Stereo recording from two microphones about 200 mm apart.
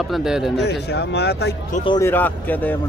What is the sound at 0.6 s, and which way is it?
Speech, 55° left (ahead or behind).